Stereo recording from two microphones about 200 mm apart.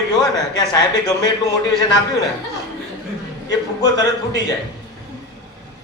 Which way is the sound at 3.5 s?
20° left (ahead or behind).